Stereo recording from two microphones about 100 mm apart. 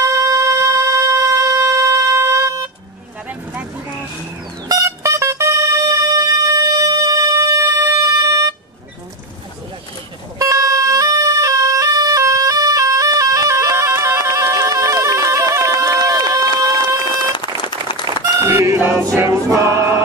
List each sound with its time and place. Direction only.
0.0 s music: 35° right (ahead or behind)
4.6 s music: 35° right (ahead or behind)
10.4 s music: 35° right (ahead or behind)
17.6 s applause: 50° left (ahead or behind)
18.0 s music: 35° right (ahead or behind)
18.8 s choir: 20° right (ahead or behind)
19.1 s music: 30° right (ahead or behind)